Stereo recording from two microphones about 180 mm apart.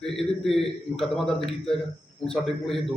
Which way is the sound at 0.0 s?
Centre (ahead or behind).